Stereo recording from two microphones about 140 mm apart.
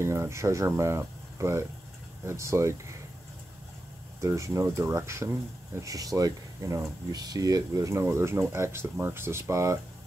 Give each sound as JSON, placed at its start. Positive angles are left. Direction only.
{"t": 0.0, "sound": "speech", "side_deg": -20}
{"t": 4.2, "sound": "speech", "side_deg": -20}